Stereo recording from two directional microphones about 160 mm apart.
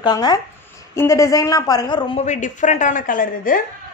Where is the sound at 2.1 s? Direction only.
50° left (ahead or behind).